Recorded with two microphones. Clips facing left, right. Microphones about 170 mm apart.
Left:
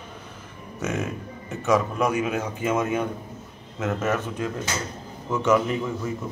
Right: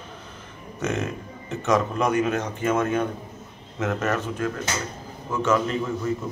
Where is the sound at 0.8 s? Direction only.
5° left (ahead or behind).